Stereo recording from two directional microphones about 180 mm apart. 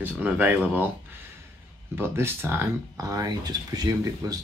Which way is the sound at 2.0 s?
15° right (ahead or behind).